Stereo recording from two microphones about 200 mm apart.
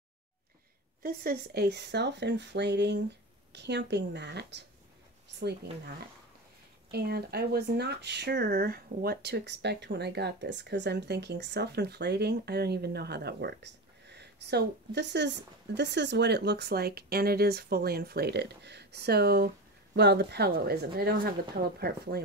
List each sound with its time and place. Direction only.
1.0 s speech: 50° right (ahead or behind)
6.9 s speech: 50° right (ahead or behind)